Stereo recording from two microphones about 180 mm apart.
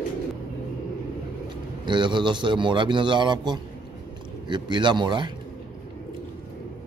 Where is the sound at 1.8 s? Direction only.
25° right (ahead or behind).